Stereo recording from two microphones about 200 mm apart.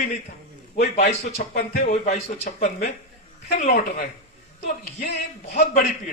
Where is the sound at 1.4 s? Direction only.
45° left (ahead or behind).